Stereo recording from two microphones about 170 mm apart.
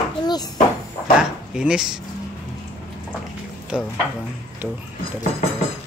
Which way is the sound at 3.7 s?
5° right (ahead or behind).